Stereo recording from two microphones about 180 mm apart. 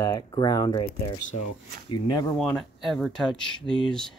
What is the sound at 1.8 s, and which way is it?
Speech, 25° left (ahead or behind).